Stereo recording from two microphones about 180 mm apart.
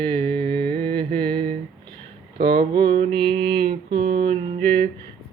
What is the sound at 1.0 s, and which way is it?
Mantra, 55° right (ahead or behind).